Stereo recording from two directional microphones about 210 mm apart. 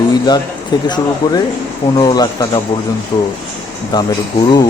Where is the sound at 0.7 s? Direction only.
20° left (ahead or behind).